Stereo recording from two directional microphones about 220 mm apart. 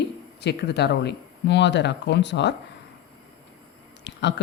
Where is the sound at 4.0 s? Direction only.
50° left (ahead or behind).